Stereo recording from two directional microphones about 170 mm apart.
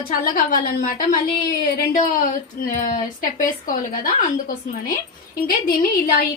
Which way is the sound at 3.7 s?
50° left (ahead or behind).